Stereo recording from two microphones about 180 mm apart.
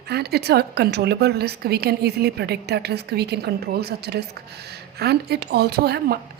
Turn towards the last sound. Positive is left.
turn(degrees=-60)  # may be behind; listen again after turning